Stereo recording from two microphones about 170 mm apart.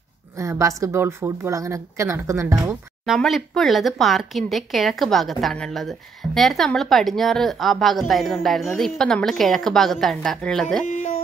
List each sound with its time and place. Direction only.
0.4 s speech: 15° right (ahead or behind)
3.1 s speech: centre (ahead or behind)
10.9 s music: 45° left (ahead or behind)